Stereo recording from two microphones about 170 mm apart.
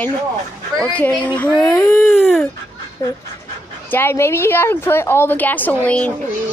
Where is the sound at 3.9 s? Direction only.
15° left (ahead or behind).